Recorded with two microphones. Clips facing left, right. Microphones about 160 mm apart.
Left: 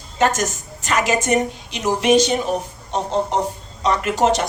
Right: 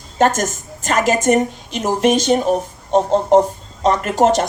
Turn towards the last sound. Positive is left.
turn(degrees=-45)  # may be behind; listen again after turning